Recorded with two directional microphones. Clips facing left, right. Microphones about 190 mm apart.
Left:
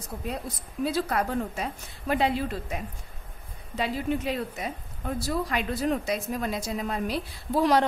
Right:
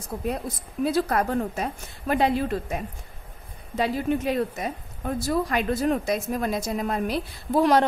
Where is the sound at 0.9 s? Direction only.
45° right (ahead or behind).